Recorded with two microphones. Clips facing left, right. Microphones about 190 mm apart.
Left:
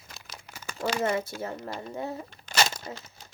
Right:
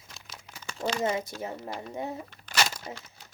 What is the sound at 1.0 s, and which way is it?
A child's voice, 15° right (ahead or behind).